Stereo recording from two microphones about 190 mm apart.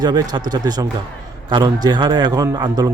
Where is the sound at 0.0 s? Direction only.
20° right (ahead or behind).